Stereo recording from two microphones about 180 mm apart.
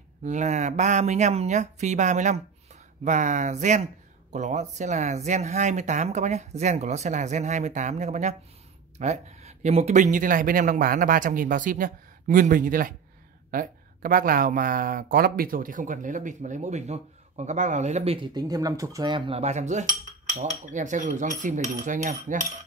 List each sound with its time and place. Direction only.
0.2 s speech: 40° right (ahead or behind)